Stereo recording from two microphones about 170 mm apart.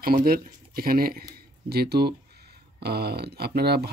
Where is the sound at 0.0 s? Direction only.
60° right (ahead or behind).